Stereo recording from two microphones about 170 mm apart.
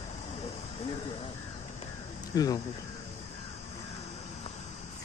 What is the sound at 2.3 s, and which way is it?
Speech, 20° left (ahead or behind).